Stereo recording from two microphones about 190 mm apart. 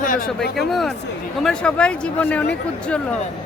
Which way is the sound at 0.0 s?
45° left (ahead or behind).